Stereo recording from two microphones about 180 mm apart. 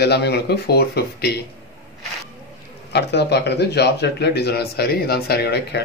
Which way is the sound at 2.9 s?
70° left (ahead or behind).